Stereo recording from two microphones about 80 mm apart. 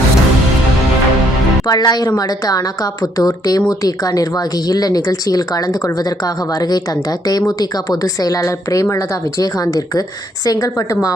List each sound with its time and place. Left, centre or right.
1.6 s speech: left